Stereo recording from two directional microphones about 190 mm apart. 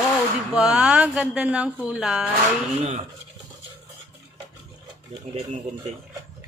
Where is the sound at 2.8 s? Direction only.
35° right (ahead or behind).